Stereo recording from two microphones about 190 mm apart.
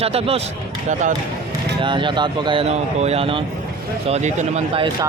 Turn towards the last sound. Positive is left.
turn(degrees=-25)  # may be behind; listen again after turning